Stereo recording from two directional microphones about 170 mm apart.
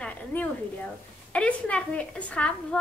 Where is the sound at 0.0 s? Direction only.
10° left (ahead or behind).